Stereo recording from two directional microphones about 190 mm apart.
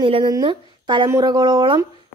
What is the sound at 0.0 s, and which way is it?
A woman's voice, 25° right (ahead or behind).